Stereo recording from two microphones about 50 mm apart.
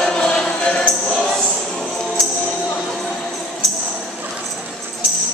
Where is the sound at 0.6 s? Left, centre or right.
Left.